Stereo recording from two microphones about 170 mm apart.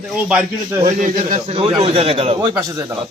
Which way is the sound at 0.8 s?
50° right (ahead or behind).